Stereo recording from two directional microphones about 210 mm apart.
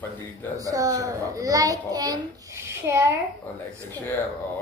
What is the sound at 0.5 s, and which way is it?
A child's voice, 15° right (ahead or behind).